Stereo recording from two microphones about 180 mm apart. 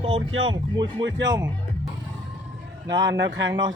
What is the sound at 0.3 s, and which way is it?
Speech, 90° right.